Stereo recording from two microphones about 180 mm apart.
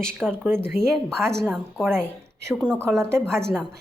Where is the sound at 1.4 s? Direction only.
Centre (ahead or behind).